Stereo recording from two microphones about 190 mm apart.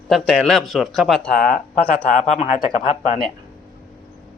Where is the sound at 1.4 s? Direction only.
50° left (ahead or behind).